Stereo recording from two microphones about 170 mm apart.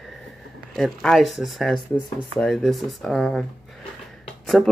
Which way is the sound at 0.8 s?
Centre (ahead or behind).